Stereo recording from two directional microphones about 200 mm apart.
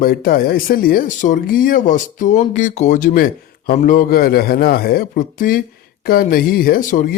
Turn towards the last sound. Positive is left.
turn(degrees=40)  # may be behind; listen again after turning